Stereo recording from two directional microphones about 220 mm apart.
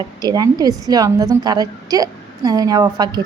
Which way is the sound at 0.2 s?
15° right (ahead or behind).